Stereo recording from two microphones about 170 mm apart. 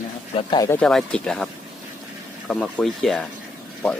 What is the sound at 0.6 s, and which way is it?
Speech, 5° left (ahead or behind).